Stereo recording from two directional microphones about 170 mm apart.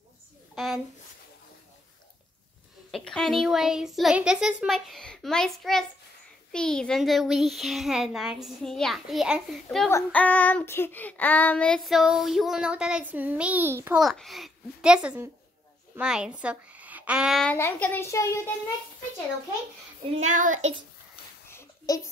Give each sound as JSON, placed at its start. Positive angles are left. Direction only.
{"t": 2.9, "sound": "child singing", "side_deg": 0}
{"t": 9.8, "sound": "child singing", "side_deg": 10}
{"t": 13.9, "sound": "child singing", "side_deg": 0}
{"t": 20.2, "sound": "child singing", "side_deg": -45}
{"t": 21.5, "sound": "a sound", "side_deg": 15}